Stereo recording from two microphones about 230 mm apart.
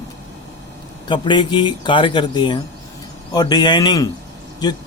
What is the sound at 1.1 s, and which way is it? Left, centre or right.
Speech, centre.